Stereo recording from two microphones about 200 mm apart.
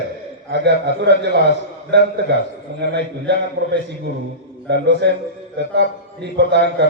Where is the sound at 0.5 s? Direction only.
55° right (ahead or behind).